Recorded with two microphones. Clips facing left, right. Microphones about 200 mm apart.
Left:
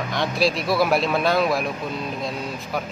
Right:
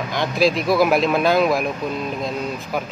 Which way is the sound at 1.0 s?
Centre (ahead or behind).